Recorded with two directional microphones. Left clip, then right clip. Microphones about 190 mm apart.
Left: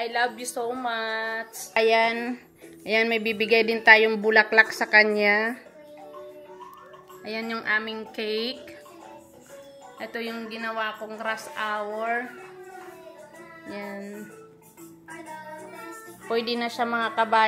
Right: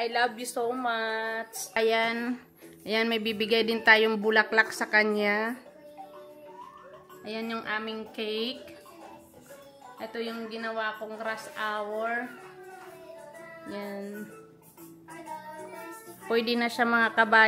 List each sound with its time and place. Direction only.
0.0 s a woman's voice: 10° right (ahead or behind)
7.2 s a woman's voice: 10° left (ahead or behind)
9.9 s a woman's voice: 15° left (ahead or behind)
13.7 s music: 5° right (ahead or behind)
16.3 s a woman's voice: 30° right (ahead or behind)